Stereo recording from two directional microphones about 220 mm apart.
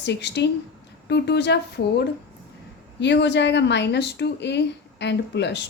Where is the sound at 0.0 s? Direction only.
50° left (ahead or behind).